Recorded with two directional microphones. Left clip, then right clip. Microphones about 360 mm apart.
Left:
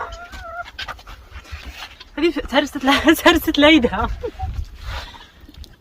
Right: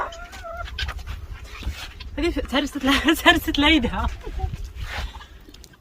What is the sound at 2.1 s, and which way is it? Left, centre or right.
Speech, centre.